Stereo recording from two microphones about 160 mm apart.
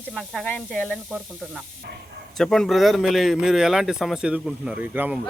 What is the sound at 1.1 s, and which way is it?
Speech, 5° right (ahead or behind).